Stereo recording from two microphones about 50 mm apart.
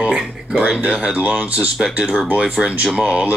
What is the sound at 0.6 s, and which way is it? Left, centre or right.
Speech, right.